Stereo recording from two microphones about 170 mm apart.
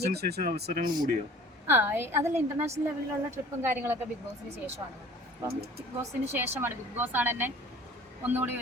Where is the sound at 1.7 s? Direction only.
15° right (ahead or behind).